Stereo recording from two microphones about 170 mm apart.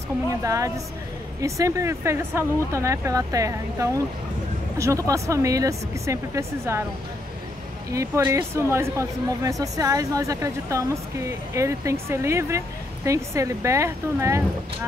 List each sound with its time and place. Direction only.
0.4 s speech: 20° right (ahead or behind)
7.9 s speech: 20° right (ahead or behind)